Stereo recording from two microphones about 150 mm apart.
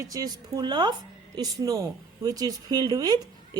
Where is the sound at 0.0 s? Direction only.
25° right (ahead or behind).